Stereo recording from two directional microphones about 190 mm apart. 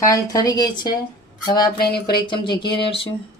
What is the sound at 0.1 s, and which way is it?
Speech, 20° left (ahead or behind).